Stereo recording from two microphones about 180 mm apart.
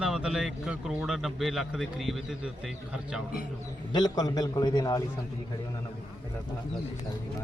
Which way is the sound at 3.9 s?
25° left (ahead or behind).